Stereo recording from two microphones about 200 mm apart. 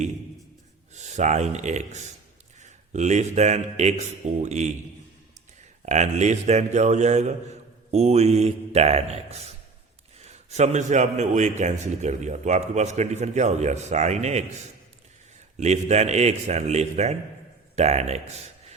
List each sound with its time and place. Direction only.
0.9 s a man's voice: 35° right (ahead or behind)
5.8 s a man's voice: 35° right (ahead or behind)
15.5 s a man's voice: 35° right (ahead or behind)